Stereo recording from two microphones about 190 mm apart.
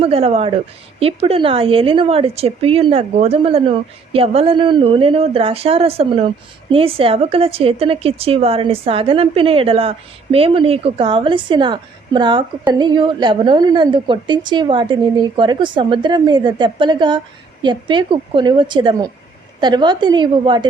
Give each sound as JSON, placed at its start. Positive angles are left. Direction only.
{"t": 0.0, "sound": "a woman's voice", "side_deg": -30}